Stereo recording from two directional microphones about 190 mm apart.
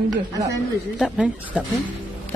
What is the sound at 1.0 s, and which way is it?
Speech, 5° right (ahead or behind).